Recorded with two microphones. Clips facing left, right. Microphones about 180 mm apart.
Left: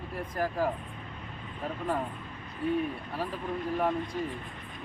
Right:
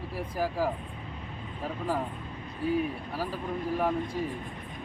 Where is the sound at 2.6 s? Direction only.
5° right (ahead or behind).